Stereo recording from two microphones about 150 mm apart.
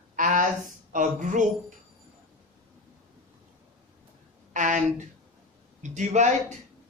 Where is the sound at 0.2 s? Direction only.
60° right (ahead or behind).